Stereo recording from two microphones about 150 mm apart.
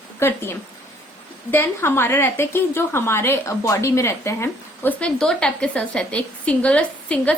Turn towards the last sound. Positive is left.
turn(degrees=10)  # may be behind; listen again after turning